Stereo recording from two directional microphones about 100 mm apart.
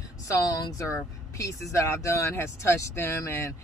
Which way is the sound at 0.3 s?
35° left (ahead or behind).